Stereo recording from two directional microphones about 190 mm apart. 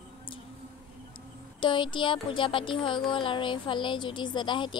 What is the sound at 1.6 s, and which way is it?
A woman's voice, 25° left (ahead or behind).